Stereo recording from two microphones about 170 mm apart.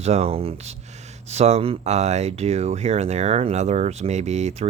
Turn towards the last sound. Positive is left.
turn(degrees=-40)  # may be behind; listen again after turning